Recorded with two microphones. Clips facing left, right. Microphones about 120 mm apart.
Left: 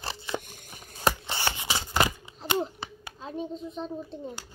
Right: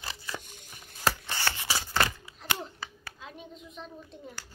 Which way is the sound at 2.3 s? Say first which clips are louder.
Left 8 dB; 25° left (ahead or behind).